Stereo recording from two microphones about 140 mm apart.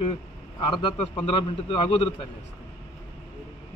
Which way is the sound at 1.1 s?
40° left (ahead or behind).